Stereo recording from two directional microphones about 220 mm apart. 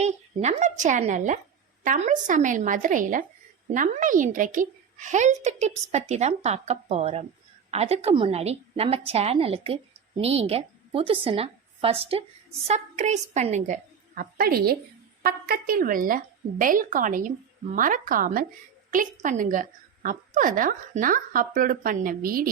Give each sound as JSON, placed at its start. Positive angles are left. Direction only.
{"t": 0.0, "sound": "a woman's voice", "side_deg": -30}